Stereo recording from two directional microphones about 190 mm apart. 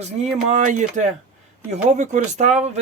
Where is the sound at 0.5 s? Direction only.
40° right (ahead or behind).